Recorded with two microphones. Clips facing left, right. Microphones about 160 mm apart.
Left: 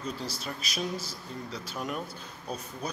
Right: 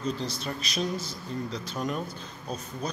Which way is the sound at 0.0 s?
5° left (ahead or behind).